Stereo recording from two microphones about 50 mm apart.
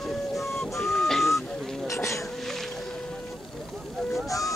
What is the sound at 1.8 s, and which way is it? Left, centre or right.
Bee, left.